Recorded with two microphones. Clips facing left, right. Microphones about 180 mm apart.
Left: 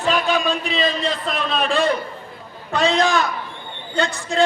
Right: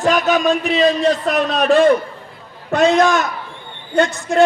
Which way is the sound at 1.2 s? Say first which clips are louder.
Right 7 dB; 70° right (ahead or behind).